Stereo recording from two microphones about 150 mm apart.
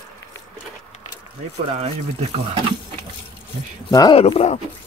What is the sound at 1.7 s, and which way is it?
Speech, 45° right (ahead or behind).